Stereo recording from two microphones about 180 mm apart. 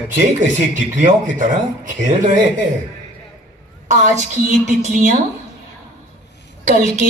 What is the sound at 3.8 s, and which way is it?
A woman's voice, 40° right (ahead or behind).